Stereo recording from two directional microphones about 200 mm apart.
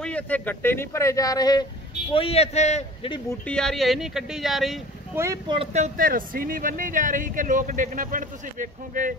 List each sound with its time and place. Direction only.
0.0 s speech: 5° left (ahead or behind)
2.1 s a man's voice: 30° left (ahead or behind)
3.3 s speech: 5° left (ahead or behind)
5.1 s speech: 15° right (ahead or behind)
5.5 s speech: 30° right (ahead or behind)